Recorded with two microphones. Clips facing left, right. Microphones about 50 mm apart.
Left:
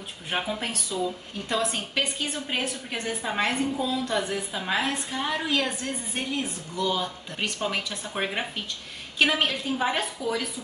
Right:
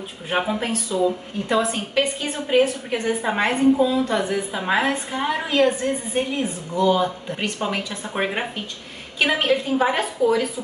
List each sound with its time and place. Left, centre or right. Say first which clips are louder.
0.3 s a woman's voice: right 7 dB; right